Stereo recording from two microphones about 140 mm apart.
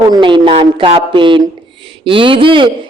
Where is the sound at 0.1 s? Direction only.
35° right (ahead or behind).